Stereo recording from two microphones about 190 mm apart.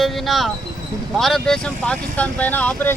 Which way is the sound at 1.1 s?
Centre (ahead or behind).